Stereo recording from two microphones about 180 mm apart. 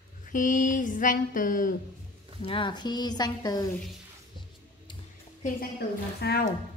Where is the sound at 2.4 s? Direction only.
30° left (ahead or behind).